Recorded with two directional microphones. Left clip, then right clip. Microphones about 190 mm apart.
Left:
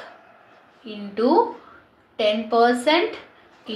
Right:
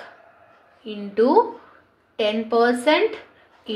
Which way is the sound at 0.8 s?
45° right (ahead or behind).